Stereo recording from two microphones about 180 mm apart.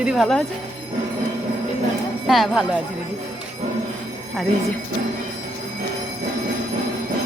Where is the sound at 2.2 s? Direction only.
Centre (ahead or behind).